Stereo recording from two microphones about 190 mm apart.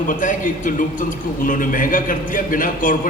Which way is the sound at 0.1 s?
40° left (ahead or behind).